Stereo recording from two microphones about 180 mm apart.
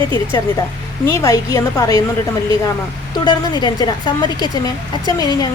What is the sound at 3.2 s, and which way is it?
A woman's voice, 25° left (ahead or behind).